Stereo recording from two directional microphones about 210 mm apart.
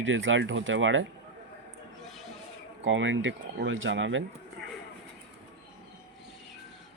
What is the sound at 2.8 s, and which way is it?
Speech, 65° right (ahead or behind).